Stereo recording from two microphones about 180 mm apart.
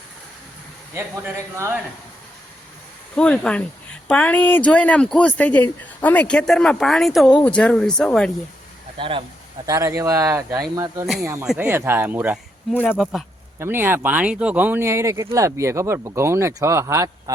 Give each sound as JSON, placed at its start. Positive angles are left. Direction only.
{"t": 0.9, "sound": "speech", "side_deg": -15}
{"t": 3.2, "sound": "speech", "side_deg": 5}
{"t": 9.0, "sound": "speech", "side_deg": -30}
{"t": 9.6, "sound": "speech", "side_deg": -15}
{"t": 12.7, "sound": "speech", "side_deg": 10}
{"t": 13.6, "sound": "speech", "side_deg": -10}